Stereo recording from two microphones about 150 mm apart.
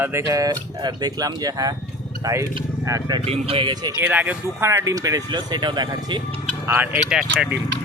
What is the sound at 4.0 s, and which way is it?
Speech, 10° right (ahead or behind).